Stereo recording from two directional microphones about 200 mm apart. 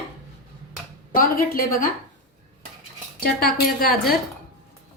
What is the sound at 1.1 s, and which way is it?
Speech, 45° left (ahead or behind).